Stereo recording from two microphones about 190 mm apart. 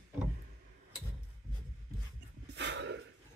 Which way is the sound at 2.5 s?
65° right (ahead or behind).